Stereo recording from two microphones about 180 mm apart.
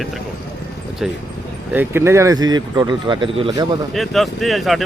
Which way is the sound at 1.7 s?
10° right (ahead or behind).